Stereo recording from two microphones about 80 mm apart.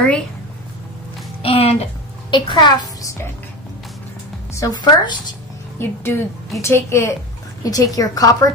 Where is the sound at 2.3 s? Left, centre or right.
Left.